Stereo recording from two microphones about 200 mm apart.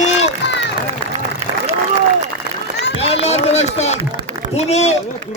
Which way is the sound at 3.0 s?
30° left (ahead or behind).